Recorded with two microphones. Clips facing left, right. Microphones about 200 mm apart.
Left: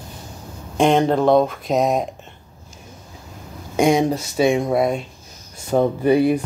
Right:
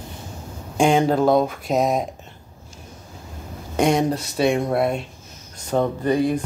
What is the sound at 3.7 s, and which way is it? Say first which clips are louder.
Speech: left 2 dB; 5° left (ahead or behind).